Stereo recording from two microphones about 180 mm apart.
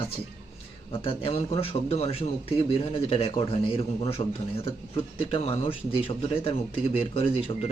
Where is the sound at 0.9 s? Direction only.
30° left (ahead or behind).